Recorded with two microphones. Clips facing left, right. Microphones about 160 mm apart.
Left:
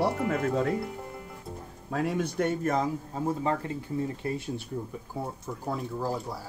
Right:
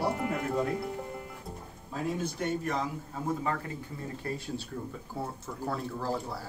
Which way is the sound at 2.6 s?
45° left (ahead or behind).